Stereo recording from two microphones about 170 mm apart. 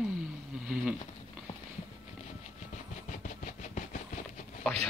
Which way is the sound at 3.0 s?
45° left (ahead or behind).